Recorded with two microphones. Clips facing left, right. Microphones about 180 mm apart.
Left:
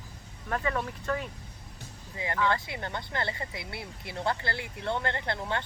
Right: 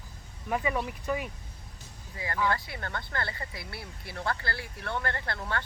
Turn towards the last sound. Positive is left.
turn(degrees=20)  # may be behind; listen again after turning